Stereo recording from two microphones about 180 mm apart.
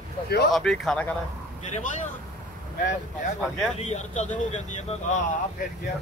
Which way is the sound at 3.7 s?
40° left (ahead or behind).